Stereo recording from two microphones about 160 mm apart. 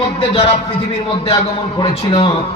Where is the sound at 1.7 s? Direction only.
30° left (ahead or behind).